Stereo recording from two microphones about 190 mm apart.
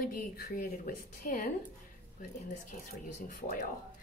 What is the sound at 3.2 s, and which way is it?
Speech, 40° left (ahead or behind).